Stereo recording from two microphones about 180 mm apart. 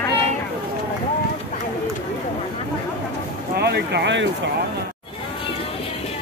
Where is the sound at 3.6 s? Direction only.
65° right (ahead or behind).